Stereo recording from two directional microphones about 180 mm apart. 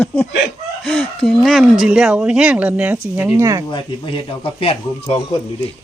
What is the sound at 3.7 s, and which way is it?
A man's voice, 30° left (ahead or behind).